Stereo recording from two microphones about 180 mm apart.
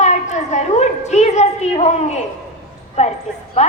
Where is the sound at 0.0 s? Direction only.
40° left (ahead or behind).